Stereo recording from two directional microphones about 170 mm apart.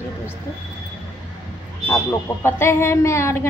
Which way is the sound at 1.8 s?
15° left (ahead or behind).